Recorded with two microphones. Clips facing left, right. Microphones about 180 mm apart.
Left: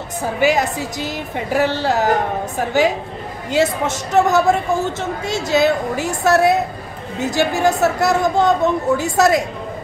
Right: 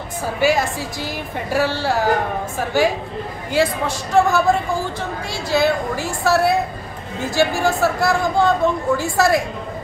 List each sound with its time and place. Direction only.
0.4 s speech: 20° left (ahead or behind)
3.5 s speech: 20° left (ahead or behind)